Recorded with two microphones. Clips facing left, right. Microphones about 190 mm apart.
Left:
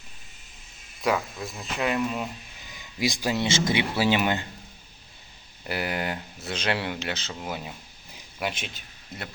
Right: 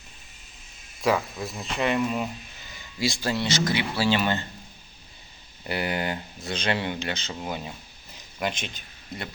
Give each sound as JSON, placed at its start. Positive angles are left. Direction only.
{"t": 1.0, "sound": "speech", "side_deg": 0}
{"t": 2.7, "sound": "speech", "side_deg": 15}
{"t": 5.6, "sound": "speech", "side_deg": 0}
{"t": 8.1, "sound": "a sound", "side_deg": 5}